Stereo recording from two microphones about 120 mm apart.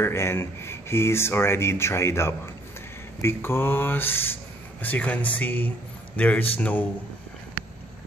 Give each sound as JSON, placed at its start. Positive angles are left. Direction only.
{"t": 0.0, "sound": "speech", "side_deg": 20}